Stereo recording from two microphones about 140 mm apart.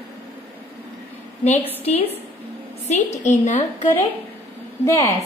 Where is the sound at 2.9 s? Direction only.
55° left (ahead or behind).